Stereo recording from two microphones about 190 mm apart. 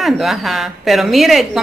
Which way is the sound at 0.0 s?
Centre (ahead or behind).